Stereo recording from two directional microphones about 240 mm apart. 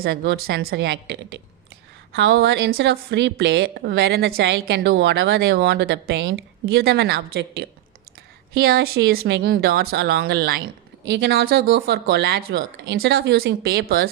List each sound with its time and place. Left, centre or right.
0.0 s a woman's voice: right